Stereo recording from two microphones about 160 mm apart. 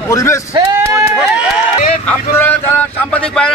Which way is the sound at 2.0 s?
10° left (ahead or behind).